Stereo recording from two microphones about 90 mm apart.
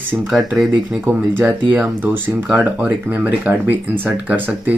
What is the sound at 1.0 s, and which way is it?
Speech, 20° right (ahead or behind).